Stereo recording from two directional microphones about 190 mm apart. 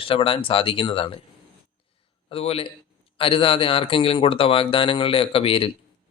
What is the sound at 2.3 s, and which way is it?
A man's voice, 30° left (ahead or behind).